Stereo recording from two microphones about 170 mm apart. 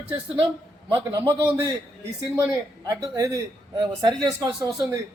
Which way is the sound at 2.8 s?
20° right (ahead or behind).